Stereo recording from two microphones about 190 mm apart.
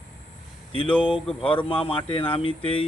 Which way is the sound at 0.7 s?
25° left (ahead or behind).